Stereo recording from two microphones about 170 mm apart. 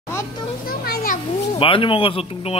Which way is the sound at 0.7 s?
55° left (ahead or behind).